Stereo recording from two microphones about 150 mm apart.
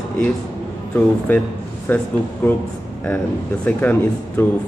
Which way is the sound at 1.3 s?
10° left (ahead or behind).